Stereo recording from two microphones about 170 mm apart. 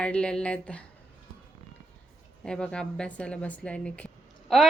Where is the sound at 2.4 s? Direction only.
5° left (ahead or behind).